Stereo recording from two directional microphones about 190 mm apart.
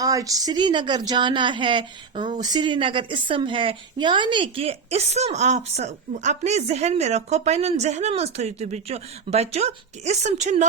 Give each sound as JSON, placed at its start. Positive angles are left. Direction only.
{"t": 0.0, "sound": "a woman's voice", "side_deg": -20}